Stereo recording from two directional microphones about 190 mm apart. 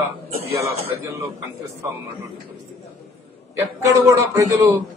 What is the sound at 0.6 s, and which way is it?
Speech, 15° right (ahead or behind).